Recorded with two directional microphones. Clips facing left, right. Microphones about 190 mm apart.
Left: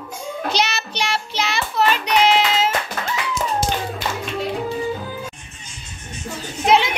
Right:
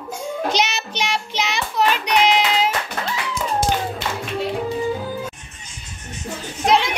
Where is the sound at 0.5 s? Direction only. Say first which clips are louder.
Even; 15° right (ahead or behind).